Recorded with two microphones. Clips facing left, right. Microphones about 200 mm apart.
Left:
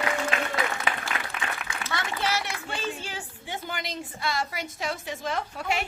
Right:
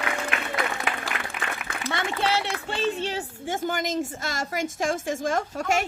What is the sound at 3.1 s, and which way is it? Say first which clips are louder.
A woman's voice: right 8 dB; 40° right (ahead or behind).